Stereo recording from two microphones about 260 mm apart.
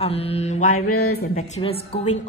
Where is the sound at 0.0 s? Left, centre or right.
Left.